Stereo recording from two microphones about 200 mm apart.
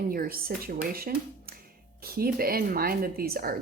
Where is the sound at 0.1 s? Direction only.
45° right (ahead or behind).